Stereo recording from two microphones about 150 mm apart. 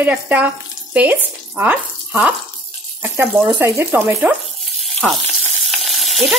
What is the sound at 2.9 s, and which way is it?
Frying, 15° right (ahead or behind).